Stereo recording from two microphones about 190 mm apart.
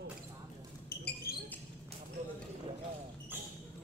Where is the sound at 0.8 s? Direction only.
55° left (ahead or behind).